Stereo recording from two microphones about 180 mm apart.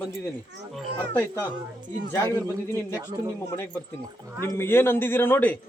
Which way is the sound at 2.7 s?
15° left (ahead or behind).